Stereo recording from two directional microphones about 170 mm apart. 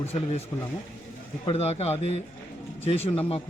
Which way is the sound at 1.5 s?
35° left (ahead or behind).